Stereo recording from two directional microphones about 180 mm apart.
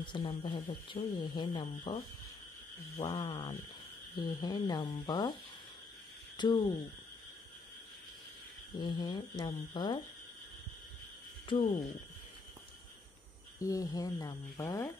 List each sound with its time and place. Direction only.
0.0 s speech: 25° left (ahead or behind)
3.1 s speech: 25° left (ahead or behind)
6.3 s speech: 25° left (ahead or behind)
8.7 s speech: 25° left (ahead or behind)
11.4 s speech: 30° left (ahead or behind)
13.6 s speech: 20° left (ahead or behind)